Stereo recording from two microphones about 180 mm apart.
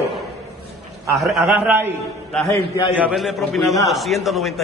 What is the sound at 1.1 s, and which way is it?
Speech, centre (ahead or behind).